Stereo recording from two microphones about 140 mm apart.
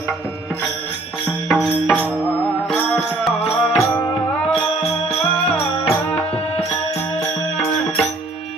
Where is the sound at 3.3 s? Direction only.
45° left (ahead or behind).